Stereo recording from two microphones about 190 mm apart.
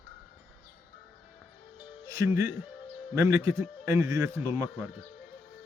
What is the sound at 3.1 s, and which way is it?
Speech, 15° right (ahead or behind).